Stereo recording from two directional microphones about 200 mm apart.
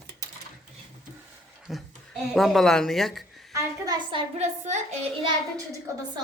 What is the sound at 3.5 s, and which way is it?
Speech, 20° right (ahead or behind).